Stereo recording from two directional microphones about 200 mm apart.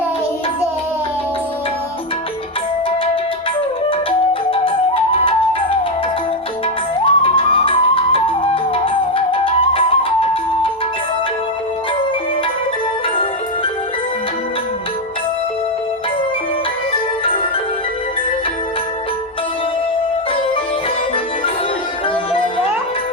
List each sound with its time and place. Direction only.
4.5 s flute: 25° left (ahead or behind)
7.0 s music: 25° left (ahead or behind)